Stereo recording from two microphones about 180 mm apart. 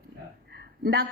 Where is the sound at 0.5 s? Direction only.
65° right (ahead or behind).